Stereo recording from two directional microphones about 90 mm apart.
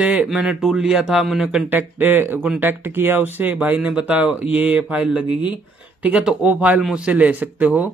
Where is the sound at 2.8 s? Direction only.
25° right (ahead or behind).